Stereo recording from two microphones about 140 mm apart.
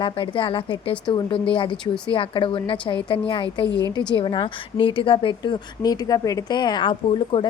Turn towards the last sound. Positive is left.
turn(degrees=35)  # may be behind; listen again after turning